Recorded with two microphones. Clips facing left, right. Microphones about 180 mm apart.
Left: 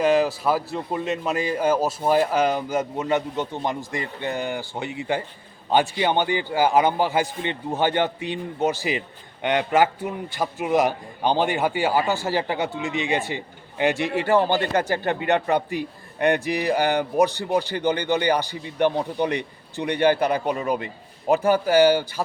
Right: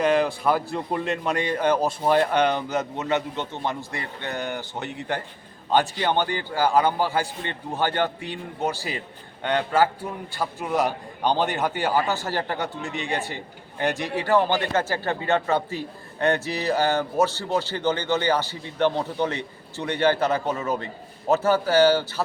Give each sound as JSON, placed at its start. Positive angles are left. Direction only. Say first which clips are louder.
{"t": 0.0, "sound": "a man's voice", "louder": "left 1 dB", "side_deg": 5}